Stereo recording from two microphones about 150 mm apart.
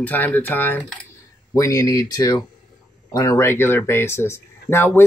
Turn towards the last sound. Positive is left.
turn(degrees=15)  # may be behind; listen again after turning